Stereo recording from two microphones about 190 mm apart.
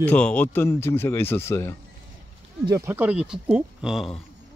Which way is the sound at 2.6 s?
15° right (ahead or behind).